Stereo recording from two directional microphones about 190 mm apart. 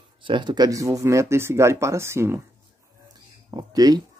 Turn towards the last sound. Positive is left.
turn(degrees=-20)  # may be behind; listen again after turning